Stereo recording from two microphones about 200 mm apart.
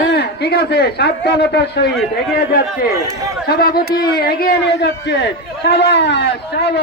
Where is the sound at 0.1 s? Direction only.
55° left (ahead or behind).